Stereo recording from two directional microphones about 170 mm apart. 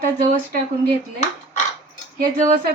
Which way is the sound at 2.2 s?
50° right (ahead or behind).